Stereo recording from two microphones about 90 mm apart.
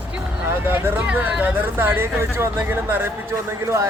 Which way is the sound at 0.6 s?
20° right (ahead or behind).